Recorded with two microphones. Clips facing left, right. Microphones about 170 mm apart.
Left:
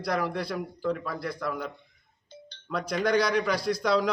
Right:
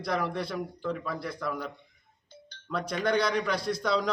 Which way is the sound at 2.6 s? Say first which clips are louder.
Left 2 dB; centre (ahead or behind).